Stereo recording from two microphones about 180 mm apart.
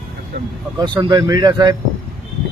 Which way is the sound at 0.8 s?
25° right (ahead or behind).